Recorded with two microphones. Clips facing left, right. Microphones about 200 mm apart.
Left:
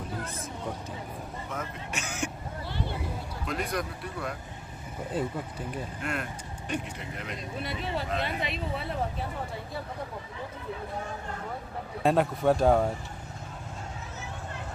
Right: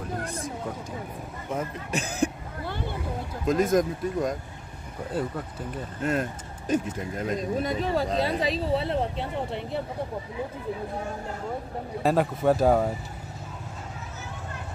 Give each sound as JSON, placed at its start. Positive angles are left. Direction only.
{"t": 1.5, "sound": "speech", "side_deg": -35}
{"t": 3.4, "sound": "speech", "side_deg": -45}
{"t": 6.7, "sound": "speech", "side_deg": -40}
{"t": 12.0, "sound": "speech", "side_deg": 0}